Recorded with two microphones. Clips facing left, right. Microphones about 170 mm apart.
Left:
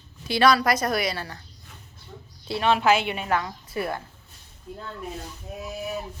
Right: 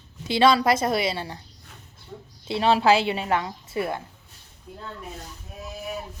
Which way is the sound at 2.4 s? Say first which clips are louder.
Right 2 dB; 30° right (ahead or behind).